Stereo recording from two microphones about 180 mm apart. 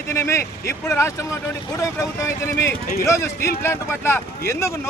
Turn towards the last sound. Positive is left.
turn(degrees=15)  # may be behind; listen again after turning